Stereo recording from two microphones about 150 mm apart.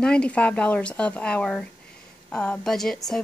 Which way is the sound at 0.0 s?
5° left (ahead or behind).